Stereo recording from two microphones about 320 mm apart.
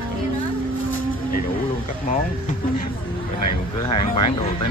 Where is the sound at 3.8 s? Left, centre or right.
Centre.